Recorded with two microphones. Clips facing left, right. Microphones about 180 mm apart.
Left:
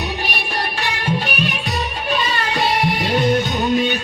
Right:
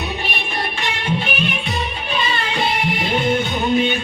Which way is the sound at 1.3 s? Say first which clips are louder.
Even; 40° left (ahead or behind).